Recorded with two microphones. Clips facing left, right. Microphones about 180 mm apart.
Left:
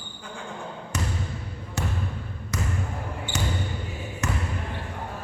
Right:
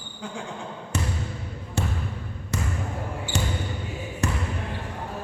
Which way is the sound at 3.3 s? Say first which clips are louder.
Even; 30° right (ahead or behind).